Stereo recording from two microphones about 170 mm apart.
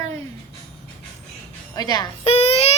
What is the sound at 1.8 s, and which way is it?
Speech, 25° left (ahead or behind).